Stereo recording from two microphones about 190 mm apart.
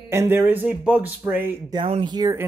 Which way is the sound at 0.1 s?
10° right (ahead or behind).